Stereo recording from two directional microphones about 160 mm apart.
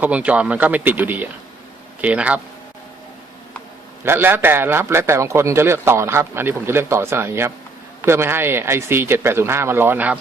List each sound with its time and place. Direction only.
0.0 s a man's voice: 10° right (ahead or behind)
4.0 s a man's voice: 15° right (ahead or behind)